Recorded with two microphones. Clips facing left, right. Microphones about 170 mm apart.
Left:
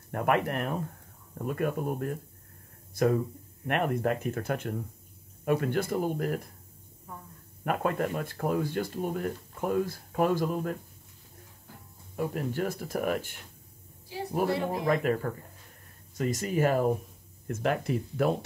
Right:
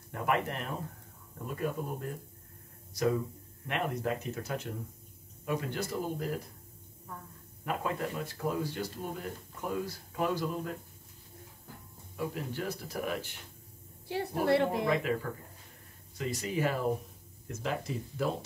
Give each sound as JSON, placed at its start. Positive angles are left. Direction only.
{"t": 0.1, "sound": "speech", "side_deg": 55}
{"t": 7.6, "sound": "speech", "side_deg": 55}
{"t": 12.2, "sound": "speech", "side_deg": 50}
{"t": 14.0, "sound": "a woman's voice", "side_deg": -65}
{"t": 16.2, "sound": "speech", "side_deg": 45}
{"t": 17.5, "sound": "speech", "side_deg": 60}